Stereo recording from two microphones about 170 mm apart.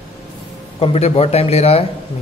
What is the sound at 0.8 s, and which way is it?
Speech, 35° left (ahead or behind).